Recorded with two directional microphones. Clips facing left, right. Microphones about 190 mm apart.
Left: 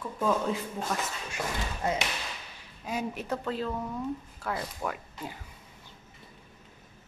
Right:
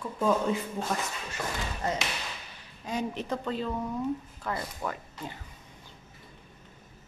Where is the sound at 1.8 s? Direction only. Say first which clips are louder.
Left 2 dB; 10° left (ahead or behind).